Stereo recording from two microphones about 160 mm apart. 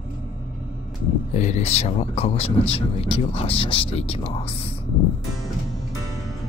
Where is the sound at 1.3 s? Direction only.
50° left (ahead or behind).